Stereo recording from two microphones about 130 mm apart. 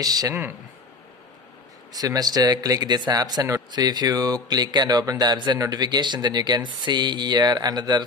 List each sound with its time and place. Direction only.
0.0 s speech: 30° right (ahead or behind)
1.9 s speech: 30° right (ahead or behind)